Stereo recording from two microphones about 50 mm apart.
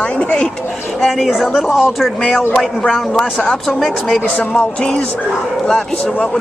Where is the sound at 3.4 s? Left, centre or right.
Centre.